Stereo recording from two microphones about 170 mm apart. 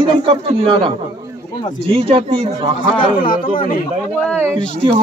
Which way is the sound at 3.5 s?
55° left (ahead or behind).